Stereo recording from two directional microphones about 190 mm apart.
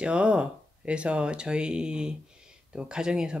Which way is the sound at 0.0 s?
5° right (ahead or behind).